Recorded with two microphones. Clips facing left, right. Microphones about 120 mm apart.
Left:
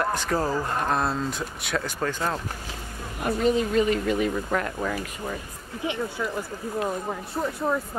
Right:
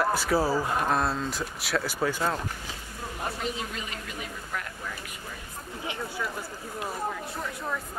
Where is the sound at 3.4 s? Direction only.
45° left (ahead or behind).